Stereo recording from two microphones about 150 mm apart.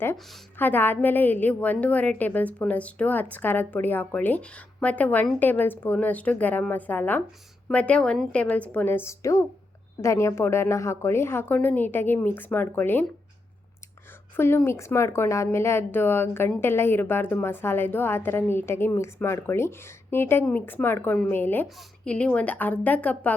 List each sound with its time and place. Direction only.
0.2 s a woman's voice: centre (ahead or behind)
0.5 s a woman's voice: 15° left (ahead or behind)
14.3 s a woman's voice: 15° left (ahead or behind)